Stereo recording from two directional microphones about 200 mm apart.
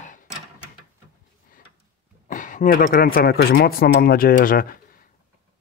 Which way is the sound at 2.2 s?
40° left (ahead or behind).